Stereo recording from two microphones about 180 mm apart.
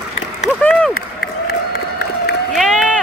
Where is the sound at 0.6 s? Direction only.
5° left (ahead or behind).